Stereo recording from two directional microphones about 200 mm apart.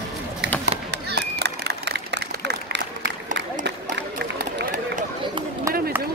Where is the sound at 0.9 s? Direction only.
55° right (ahead or behind).